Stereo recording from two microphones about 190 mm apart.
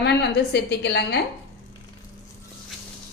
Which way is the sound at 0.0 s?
60° left (ahead or behind).